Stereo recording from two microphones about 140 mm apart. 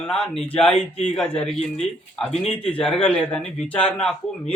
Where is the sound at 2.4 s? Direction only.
40° left (ahead or behind).